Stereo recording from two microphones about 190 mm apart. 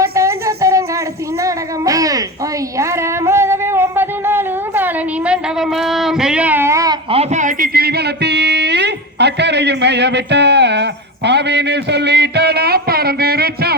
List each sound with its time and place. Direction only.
0.0 s music: 15° right (ahead or behind)
1.4 s a sound: 15° right (ahead or behind)
7.1 s speech: 35° right (ahead or behind); by 13.7 s 55° right (ahead or behind)